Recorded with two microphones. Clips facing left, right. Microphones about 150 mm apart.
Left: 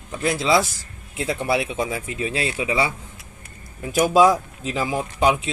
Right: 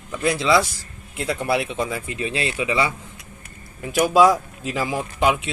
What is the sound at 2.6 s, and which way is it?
Speech, 20° left (ahead or behind).